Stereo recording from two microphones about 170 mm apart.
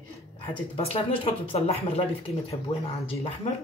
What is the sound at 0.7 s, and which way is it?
Speech, 35° left (ahead or behind).